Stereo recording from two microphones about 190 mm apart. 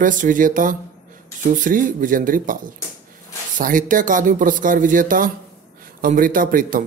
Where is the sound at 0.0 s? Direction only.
45° right (ahead or behind).